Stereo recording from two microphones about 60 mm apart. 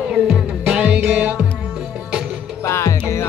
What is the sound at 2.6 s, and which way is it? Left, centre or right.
Music, left.